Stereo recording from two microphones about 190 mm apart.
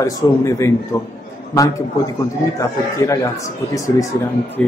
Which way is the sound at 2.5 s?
15° left (ahead or behind).